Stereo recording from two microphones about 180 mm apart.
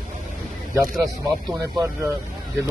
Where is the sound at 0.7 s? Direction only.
15° right (ahead or behind).